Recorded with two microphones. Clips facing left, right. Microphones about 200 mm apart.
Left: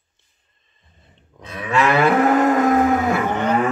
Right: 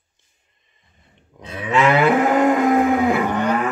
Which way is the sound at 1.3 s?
25° right (ahead or behind).